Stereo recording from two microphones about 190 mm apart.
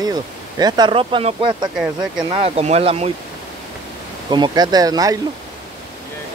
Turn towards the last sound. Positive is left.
turn(degrees=-20)  # may be behind; listen again after turning